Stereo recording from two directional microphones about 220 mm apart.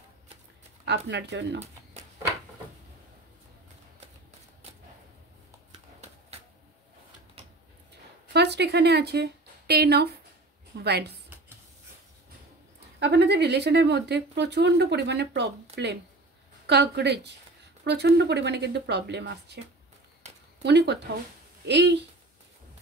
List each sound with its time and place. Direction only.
0.8 s speech: 50° right (ahead or behind)
8.3 s a woman's voice: 50° right (ahead or behind)
13.0 s speech: 50° right (ahead or behind)
20.6 s speech: 50° right (ahead or behind)